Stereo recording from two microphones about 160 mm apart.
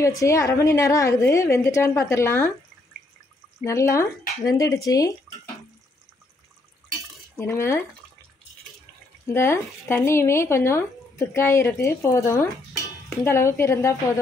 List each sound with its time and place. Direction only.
0.0 s a woman's voice: 20° left (ahead or behind)
3.6 s a woman's voice: 20° left (ahead or behind)
7.3 s speech: 15° left (ahead or behind)
9.3 s speech: 15° left (ahead or behind)